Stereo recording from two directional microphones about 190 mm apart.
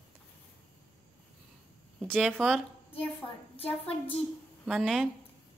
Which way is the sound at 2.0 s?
Centre (ahead or behind).